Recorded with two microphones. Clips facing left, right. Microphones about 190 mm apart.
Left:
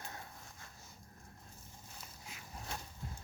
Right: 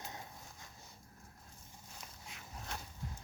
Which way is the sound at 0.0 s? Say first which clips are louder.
Right 1 dB; 20° right (ahead or behind).